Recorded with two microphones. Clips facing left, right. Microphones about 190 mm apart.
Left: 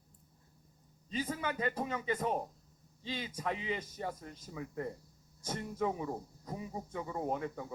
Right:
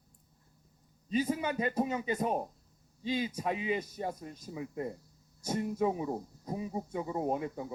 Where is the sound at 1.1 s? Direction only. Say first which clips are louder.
Right 6 dB; 15° right (ahead or behind).